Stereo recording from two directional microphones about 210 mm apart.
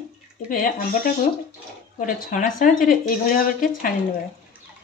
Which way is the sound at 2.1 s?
40° left (ahead or behind).